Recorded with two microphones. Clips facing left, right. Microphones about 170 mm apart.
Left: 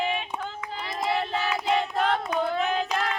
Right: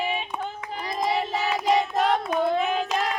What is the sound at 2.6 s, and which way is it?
Singing, 5° right (ahead or behind).